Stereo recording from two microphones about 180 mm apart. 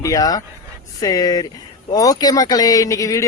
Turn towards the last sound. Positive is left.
turn(degrees=20)  # may be behind; listen again after turning